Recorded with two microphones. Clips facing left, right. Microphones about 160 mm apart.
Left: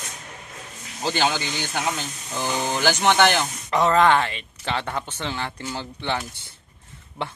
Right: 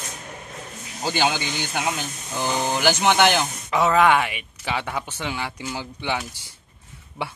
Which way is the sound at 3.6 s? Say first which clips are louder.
Even; 5° right (ahead or behind).